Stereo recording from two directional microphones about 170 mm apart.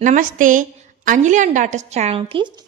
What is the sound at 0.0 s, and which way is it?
A woman's voice, 50° right (ahead or behind).